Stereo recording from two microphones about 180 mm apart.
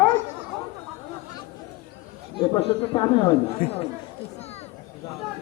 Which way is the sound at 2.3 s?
30° left (ahead or behind).